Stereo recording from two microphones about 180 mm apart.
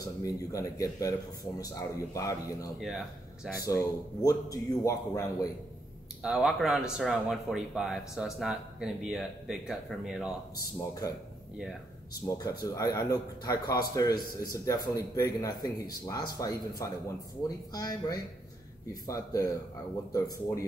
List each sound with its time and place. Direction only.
0.0 s speech: 20° left (ahead or behind)
6.2 s speech: centre (ahead or behind)
10.5 s speech: 20° left (ahead or behind)
12.3 s speech: 20° left (ahead or behind)